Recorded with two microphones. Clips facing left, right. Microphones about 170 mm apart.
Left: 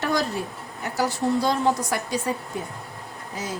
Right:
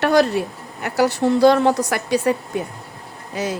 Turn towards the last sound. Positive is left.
turn(degrees=-70)  # may be behind; listen again after turning